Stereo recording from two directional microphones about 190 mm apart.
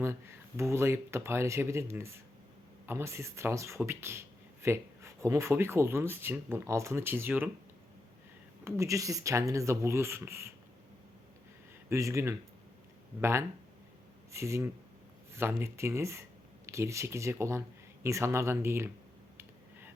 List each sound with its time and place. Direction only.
0.0 s speech: 15° right (ahead or behind)
8.6 s speech: 15° right (ahead or behind)
11.9 s speech: 15° right (ahead or behind)
14.3 s speech: 15° right (ahead or behind)